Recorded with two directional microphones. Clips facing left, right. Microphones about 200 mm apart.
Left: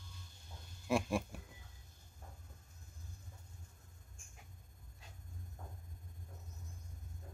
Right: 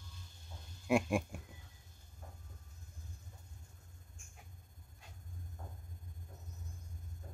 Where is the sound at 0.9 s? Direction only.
15° right (ahead or behind).